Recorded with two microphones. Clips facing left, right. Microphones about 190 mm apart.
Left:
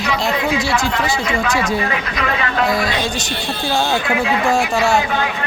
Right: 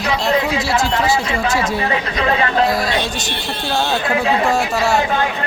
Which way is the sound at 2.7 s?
Centre (ahead or behind).